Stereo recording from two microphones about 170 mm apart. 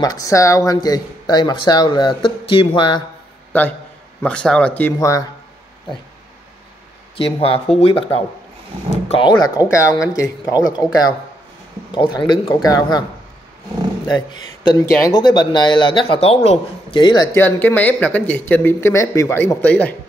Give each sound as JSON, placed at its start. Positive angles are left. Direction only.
{"t": 0.0, "sound": "speech", "side_deg": 20}
{"t": 4.2, "sound": "speech", "side_deg": 5}
{"t": 4.9, "sound": "speech", "side_deg": 20}
{"t": 7.2, "sound": "speech", "side_deg": 35}
{"t": 14.0, "sound": "speech", "side_deg": 25}